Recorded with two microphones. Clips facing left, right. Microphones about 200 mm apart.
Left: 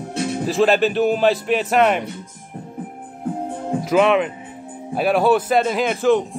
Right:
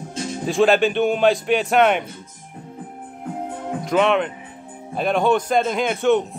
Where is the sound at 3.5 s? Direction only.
30° left (ahead or behind).